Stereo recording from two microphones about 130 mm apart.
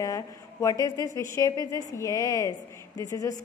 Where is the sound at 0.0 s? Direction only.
25° left (ahead or behind).